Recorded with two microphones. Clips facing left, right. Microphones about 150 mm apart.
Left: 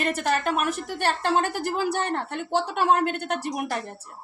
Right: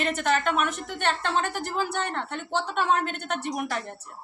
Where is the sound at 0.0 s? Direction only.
40° left (ahead or behind).